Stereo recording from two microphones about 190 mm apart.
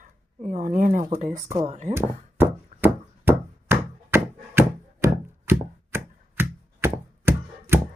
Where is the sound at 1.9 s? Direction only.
10° right (ahead or behind).